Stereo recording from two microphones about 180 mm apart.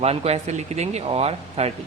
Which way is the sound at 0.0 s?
35° right (ahead or behind).